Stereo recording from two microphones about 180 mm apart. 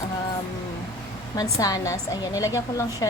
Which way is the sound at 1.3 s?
20° left (ahead or behind).